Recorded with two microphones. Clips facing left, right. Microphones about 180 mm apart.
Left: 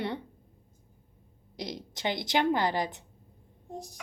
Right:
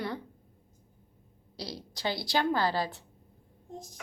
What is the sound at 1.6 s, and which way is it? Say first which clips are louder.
A woman's voice: left 2 dB; 20° left (ahead or behind).